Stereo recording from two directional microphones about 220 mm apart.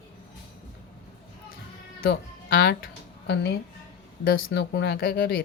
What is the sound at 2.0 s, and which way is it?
Speech, 40° left (ahead or behind).